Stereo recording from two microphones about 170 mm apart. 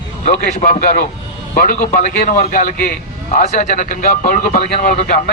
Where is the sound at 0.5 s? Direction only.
45° left (ahead or behind).